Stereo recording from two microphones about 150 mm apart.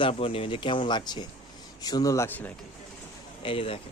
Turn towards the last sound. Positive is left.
turn(degrees=35)  # may be behind; listen again after turning